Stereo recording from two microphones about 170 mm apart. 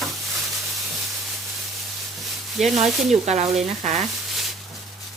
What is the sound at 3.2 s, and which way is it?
Speech, 40° right (ahead or behind).